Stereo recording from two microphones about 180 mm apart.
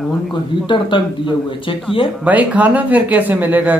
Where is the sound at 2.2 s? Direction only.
10° right (ahead or behind).